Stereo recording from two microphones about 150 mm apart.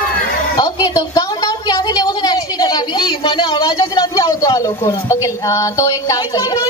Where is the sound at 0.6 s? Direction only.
25° left (ahead or behind).